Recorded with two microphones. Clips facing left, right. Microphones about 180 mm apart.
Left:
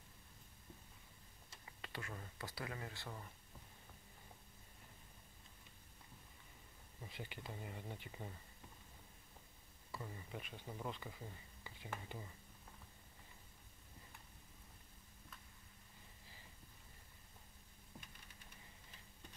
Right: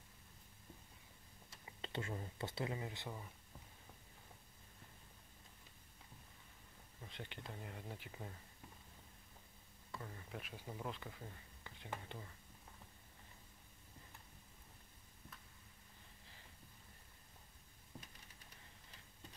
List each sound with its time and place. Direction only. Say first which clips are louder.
1.7 s speech: right 5 dB; 25° right (ahead or behind)
7.0 s speech: left 1 dB; 5° left (ahead or behind)
9.8 s speech: left 1 dB; 5° left (ahead or behind)